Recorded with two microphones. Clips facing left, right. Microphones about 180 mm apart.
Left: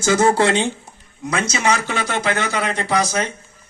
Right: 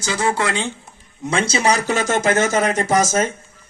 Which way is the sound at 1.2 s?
30° right (ahead or behind).